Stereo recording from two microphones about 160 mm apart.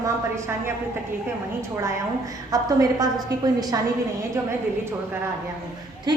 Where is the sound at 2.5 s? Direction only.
25° right (ahead or behind).